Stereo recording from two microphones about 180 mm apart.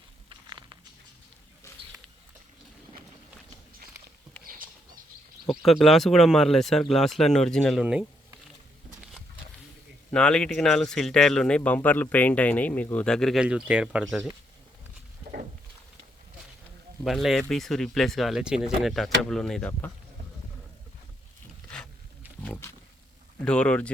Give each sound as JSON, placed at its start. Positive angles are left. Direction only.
{"t": 0.3, "sound": "a sound", "side_deg": -25}
{"t": 4.4, "sound": "patter", "side_deg": -50}
{"t": 5.5, "sound": "speech", "side_deg": 0}
{"t": 10.1, "sound": "speech", "side_deg": 5}
{"t": 17.0, "sound": "speech", "side_deg": 0}
{"t": 23.4, "sound": "speech", "side_deg": 5}